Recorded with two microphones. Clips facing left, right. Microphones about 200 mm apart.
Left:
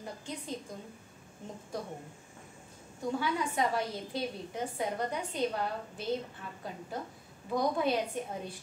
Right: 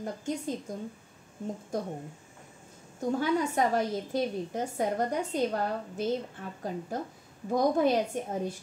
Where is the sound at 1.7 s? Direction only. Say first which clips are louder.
Right 5 dB; 45° right (ahead or behind).